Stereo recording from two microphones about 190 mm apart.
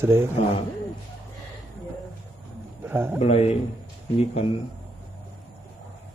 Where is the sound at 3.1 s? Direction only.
35° left (ahead or behind).